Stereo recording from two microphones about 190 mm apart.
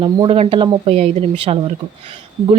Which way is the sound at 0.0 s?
30° right (ahead or behind).